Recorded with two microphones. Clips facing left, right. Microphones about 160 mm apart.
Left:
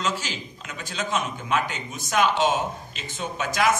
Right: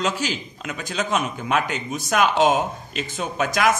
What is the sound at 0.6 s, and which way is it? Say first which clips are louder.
A man's voice: right 5 dB; 70° right (ahead or behind).